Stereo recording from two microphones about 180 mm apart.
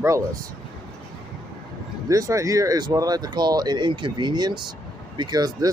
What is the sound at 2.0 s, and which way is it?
Speech, 20° right (ahead or behind).